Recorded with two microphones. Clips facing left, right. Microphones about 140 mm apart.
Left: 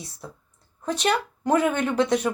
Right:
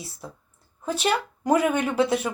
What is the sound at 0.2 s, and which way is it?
A woman's voice, 10° right (ahead or behind).